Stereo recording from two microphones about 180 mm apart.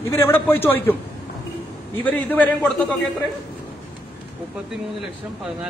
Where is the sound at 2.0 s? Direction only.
10° left (ahead or behind).